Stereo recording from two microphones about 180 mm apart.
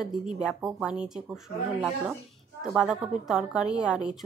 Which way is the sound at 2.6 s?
5° right (ahead or behind).